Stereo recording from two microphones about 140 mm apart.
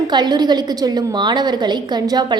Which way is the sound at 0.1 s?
30° right (ahead or behind).